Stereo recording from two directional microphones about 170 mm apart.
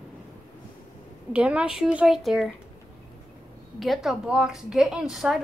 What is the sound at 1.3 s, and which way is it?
A woman's voice, 5° right (ahead or behind).